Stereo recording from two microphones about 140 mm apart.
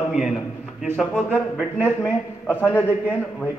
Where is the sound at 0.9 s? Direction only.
5° left (ahead or behind).